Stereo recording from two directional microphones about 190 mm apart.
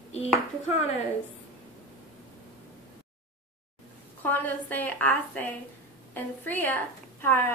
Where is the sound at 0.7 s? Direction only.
35° left (ahead or behind).